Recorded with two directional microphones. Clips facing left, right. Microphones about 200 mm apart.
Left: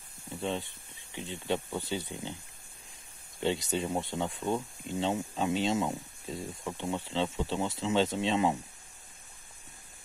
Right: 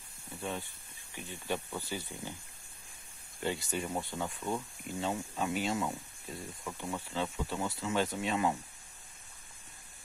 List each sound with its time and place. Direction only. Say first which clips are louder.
0.4 s speech: left 5 dB; 25° left (ahead or behind)
3.3 s speech: left 5 dB; 25° left (ahead or behind)